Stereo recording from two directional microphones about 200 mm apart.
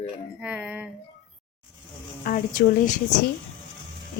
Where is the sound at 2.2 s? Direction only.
40° left (ahead or behind).